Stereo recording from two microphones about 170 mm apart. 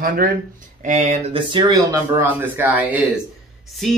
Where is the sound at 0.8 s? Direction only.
45° right (ahead or behind).